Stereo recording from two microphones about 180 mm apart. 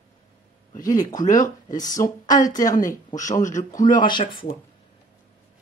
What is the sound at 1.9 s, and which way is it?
Speech, 20° left (ahead or behind).